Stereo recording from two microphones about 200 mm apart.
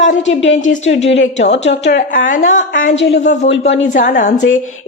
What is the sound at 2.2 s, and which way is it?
Speech, 40° left (ahead or behind).